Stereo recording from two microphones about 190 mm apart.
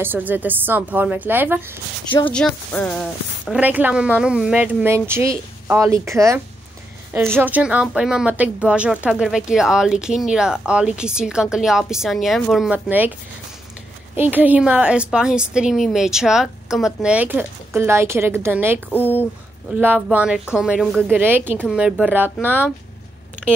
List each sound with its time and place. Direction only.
0.0 s speech: 10° right (ahead or behind)
2.0 s speech: 25° left (ahead or behind)
2.3 s a woman's voice: 5° left (ahead or behind)
14.1 s a woman's voice: 10° right (ahead or behind)
18.9 s speech: 10° left (ahead or behind)
19.7 s a woman's voice: 10° right (ahead or behind)